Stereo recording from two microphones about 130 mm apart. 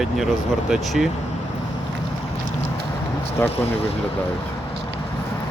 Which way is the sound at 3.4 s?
20° left (ahead or behind).